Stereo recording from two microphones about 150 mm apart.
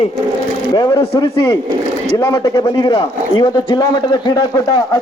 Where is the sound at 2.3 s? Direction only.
30° left (ahead or behind).